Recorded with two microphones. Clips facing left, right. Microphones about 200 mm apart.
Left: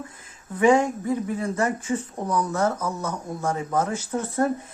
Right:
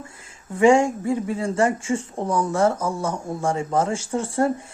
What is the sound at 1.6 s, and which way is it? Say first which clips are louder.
Speech: right 3 dB; 25° right (ahead or behind).